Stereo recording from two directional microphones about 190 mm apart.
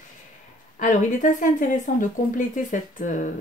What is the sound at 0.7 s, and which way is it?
Speech, 40° left (ahead or behind).